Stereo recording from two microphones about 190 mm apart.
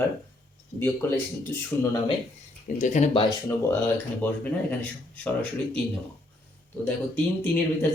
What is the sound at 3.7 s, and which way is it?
Speech, 10° left (ahead or behind).